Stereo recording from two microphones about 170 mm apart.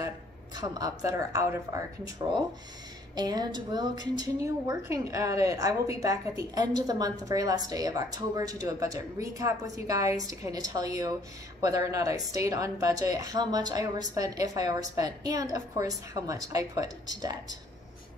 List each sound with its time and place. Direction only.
0.6 s a woman's voice: 20° right (ahead or behind)